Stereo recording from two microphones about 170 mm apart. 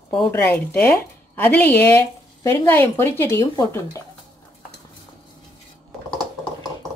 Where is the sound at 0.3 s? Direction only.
15° left (ahead or behind).